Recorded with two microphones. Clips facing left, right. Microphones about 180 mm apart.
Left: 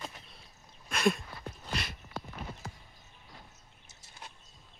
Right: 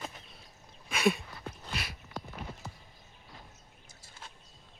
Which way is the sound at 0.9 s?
5° right (ahead or behind).